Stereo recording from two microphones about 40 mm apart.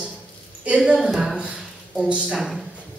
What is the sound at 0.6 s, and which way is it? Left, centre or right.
Speech, right.